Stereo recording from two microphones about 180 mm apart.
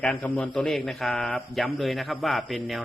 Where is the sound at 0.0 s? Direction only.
5° left (ahead or behind).